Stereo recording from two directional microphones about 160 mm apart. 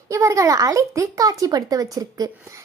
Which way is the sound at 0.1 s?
20° right (ahead or behind).